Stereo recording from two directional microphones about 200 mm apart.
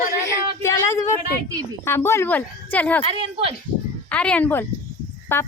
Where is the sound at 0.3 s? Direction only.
15° left (ahead or behind).